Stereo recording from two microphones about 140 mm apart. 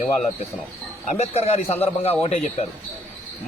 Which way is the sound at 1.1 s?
50° left (ahead or behind).